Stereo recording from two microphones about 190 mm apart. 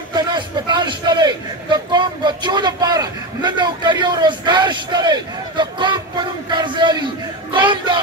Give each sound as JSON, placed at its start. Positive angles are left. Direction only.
{"t": 0.1, "sound": "a man's voice", "side_deg": -25}